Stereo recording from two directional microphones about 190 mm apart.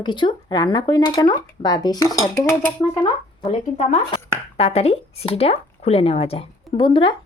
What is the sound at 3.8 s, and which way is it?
Speech, 35° left (ahead or behind).